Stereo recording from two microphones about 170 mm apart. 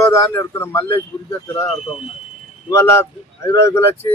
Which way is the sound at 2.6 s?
15° left (ahead or behind).